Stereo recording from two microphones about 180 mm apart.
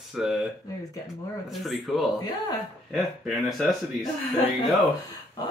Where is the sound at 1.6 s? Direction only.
Centre (ahead or behind).